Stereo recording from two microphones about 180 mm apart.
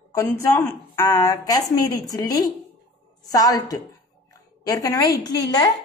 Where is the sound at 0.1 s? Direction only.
15° left (ahead or behind).